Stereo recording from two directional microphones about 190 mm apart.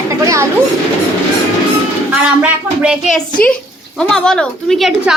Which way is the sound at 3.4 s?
50° left (ahead or behind).